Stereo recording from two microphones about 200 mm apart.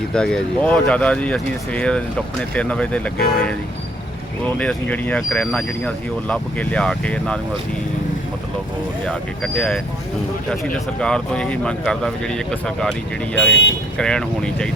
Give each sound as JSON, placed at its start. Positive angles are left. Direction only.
{"t": 0.1, "sound": "speech", "side_deg": 5}
{"t": 4.5, "sound": "speech", "side_deg": 5}
{"t": 9.0, "sound": "speech", "side_deg": 5}
{"t": 13.5, "sound": "speech", "side_deg": 65}
{"t": 14.0, "sound": "speech", "side_deg": 5}